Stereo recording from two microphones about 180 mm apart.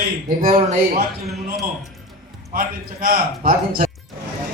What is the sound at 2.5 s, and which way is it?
A man's voice, 50° right (ahead or behind).